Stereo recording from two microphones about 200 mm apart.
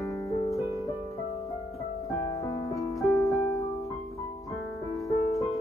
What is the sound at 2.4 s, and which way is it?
Music, 15° left (ahead or behind).